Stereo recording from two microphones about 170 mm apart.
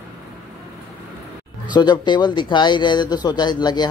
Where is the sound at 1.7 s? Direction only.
25° left (ahead or behind).